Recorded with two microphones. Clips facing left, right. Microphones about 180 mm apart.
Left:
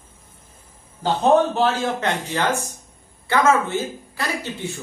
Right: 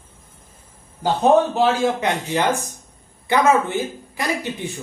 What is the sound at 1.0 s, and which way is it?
Speech, 10° right (ahead or behind).